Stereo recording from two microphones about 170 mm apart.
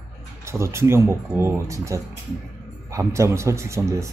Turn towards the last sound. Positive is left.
turn(degrees=-15)  # may be behind; listen again after turning